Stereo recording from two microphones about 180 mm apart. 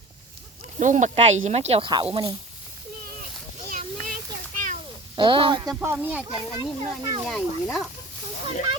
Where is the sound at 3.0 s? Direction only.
55° right (ahead or behind).